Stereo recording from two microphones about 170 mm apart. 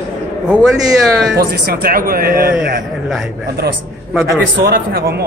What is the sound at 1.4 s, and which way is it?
A man's voice, 60° right (ahead or behind).